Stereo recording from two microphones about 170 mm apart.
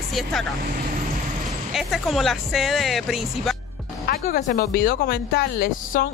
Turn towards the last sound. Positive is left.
turn(degrees=60)  # may be behind; listen again after turning